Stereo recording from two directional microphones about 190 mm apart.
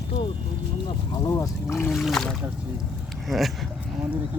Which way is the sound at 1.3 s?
15° left (ahead or behind).